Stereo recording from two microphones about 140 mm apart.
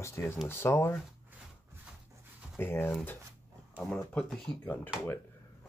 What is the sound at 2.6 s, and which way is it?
Speech, 15° left (ahead or behind).